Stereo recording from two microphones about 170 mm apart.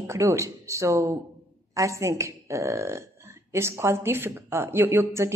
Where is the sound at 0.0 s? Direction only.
15° right (ahead or behind).